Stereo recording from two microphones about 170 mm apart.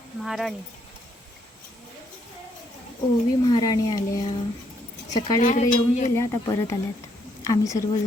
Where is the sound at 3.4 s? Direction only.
25° left (ahead or behind).